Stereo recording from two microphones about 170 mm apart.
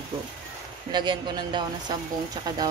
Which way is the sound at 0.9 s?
25° right (ahead or behind).